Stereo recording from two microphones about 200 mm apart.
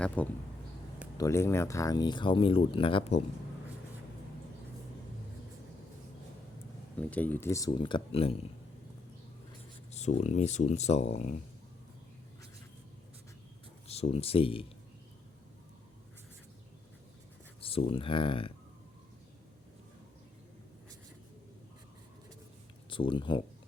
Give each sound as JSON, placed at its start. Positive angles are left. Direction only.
{"t": 0.2, "sound": "speech", "side_deg": 5}
{"t": 7.0, "sound": "speech", "side_deg": 5}
{"t": 9.9, "sound": "speech", "side_deg": 35}
{"t": 13.8, "sound": "speech", "side_deg": 30}
{"t": 17.6, "sound": "speech", "side_deg": 30}
{"t": 22.9, "sound": "speech", "side_deg": 25}